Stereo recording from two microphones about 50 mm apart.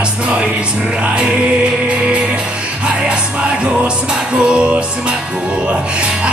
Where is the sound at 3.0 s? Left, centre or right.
Right.